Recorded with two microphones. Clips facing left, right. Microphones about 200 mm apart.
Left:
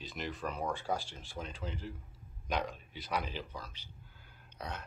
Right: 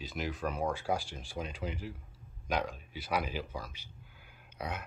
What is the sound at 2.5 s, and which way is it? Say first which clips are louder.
Speech: right 2 dB; 5° right (ahead or behind).